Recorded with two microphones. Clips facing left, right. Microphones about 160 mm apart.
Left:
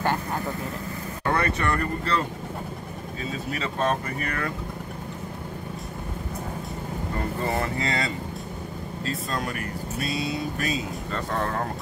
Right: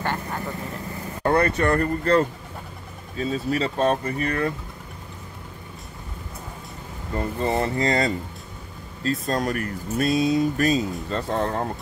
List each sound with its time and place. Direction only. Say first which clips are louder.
1.2 s speech: right 5 dB; 35° right (ahead or behind)
7.4 s speech: right 5 dB; 25° right (ahead or behind)
7.8 s speech: right 6 dB; 40° right (ahead or behind)
11.1 s speech: right 3 dB; 30° right (ahead or behind)